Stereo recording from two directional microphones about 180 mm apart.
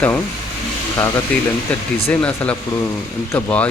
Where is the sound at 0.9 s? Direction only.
15° left (ahead or behind).